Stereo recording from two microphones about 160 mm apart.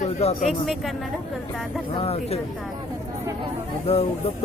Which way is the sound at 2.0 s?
40° left (ahead or behind).